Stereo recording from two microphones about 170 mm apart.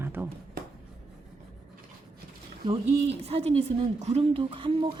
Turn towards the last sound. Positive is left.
turn(degrees=-30)  # may be behind; listen again after turning